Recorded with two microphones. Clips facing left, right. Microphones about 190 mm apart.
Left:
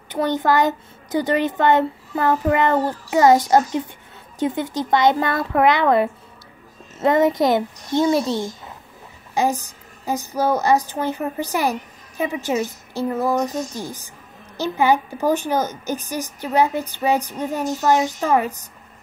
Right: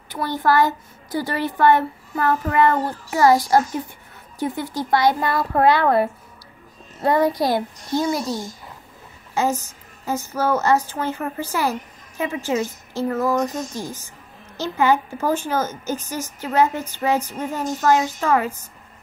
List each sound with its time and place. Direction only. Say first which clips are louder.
0.1 s a child's voice: left 1 dB; 20° left (ahead or behind)
9.3 s a woman's voice: left 1 dB; 15° left (ahead or behind)
14.6 s a woman's voice: left 1 dB; 15° left (ahead or behind)